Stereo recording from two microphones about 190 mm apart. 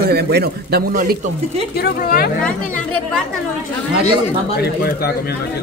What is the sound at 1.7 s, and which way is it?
Speech, 55° left (ahead or behind).